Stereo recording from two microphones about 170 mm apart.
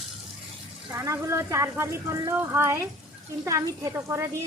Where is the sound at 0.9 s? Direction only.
15° right (ahead or behind).